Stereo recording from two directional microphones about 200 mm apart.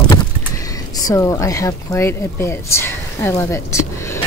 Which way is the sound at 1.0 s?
15° left (ahead or behind).